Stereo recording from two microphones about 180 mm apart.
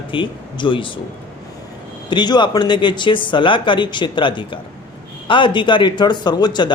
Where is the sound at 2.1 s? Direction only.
25° left (ahead or behind).